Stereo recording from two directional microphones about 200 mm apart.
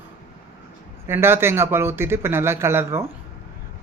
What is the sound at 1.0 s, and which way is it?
A woman's voice, 10° right (ahead or behind).